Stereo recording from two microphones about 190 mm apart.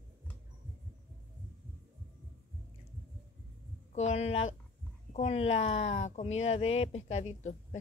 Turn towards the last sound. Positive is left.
turn(degrees=35)  # may be behind; listen again after turning